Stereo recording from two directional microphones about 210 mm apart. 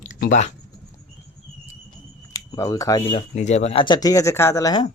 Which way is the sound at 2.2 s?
15° left (ahead or behind).